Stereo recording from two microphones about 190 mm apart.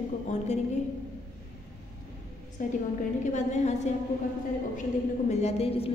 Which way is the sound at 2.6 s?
45° left (ahead or behind).